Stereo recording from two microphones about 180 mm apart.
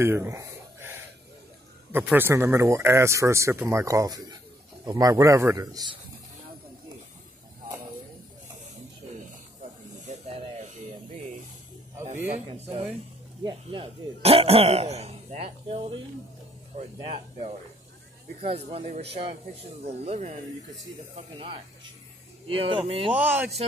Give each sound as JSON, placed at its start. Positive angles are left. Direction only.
{"t": 0.0, "sound": "a sound", "side_deg": -15}
{"t": 1.9, "sound": "a man's voice", "side_deg": -10}
{"t": 9.6, "sound": "snake", "side_deg": -40}
{"t": 12.3, "sound": "speech", "side_deg": -35}
{"t": 22.5, "sound": "a man's voice", "side_deg": -30}
{"t": 23.1, "sound": "speech", "side_deg": -5}